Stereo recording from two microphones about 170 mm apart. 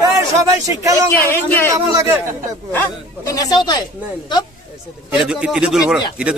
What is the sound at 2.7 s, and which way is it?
Speech, 15° left (ahead or behind).